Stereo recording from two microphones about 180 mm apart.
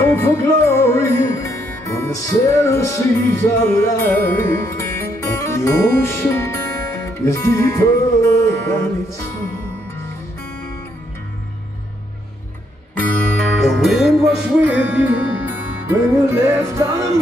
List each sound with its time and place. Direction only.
0.0 s music: 15° left (ahead or behind)
12.9 s music: 10° left (ahead or behind); by 17.2 s 15° right (ahead or behind)